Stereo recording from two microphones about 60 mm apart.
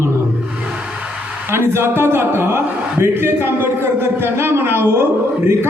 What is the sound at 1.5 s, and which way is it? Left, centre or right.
A man's voice, right.